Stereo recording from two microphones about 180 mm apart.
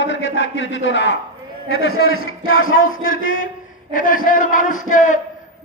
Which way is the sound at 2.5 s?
90° left.